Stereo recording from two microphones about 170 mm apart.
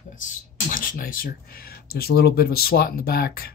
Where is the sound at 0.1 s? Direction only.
50° left (ahead or behind).